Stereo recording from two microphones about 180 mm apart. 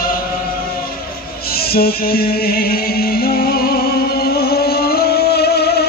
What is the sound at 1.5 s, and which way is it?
Music, 60° left (ahead or behind).